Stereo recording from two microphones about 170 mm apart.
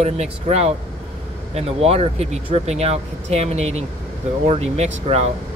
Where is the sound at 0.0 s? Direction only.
40° right (ahead or behind).